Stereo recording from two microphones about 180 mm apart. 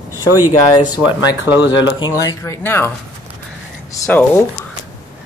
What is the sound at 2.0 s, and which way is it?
Speech, 20° left (ahead or behind).